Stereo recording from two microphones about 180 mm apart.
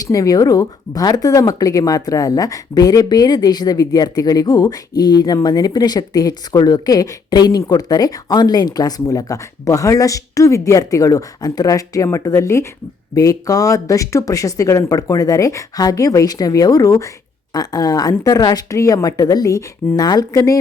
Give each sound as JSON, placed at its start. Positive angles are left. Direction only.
{"t": 0.0, "sound": "speech", "side_deg": 20}